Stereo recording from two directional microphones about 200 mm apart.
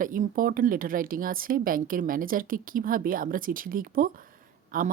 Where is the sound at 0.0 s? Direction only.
40° right (ahead or behind).